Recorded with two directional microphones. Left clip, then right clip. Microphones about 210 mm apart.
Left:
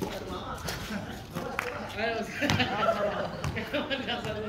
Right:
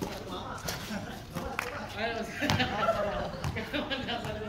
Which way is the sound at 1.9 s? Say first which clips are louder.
Left 4 dB; 15° left (ahead or behind).